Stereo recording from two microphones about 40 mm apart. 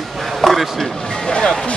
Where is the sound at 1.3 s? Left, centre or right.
Centre.